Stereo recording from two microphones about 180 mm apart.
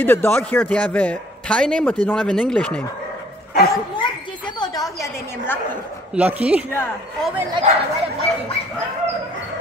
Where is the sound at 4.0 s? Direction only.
25° left (ahead or behind).